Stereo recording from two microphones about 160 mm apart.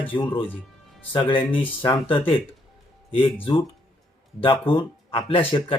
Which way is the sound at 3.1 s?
35° left (ahead or behind).